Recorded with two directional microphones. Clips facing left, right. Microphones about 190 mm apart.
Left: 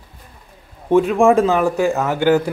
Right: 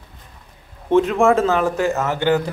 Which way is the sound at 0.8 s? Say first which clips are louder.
Left 2 dB; 15° left (ahead or behind).